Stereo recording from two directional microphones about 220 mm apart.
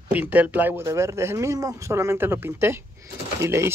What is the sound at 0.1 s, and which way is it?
A man's voice, 5° right (ahead or behind).